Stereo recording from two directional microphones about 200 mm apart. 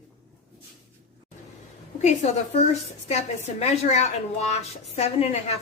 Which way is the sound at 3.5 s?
30° left (ahead or behind).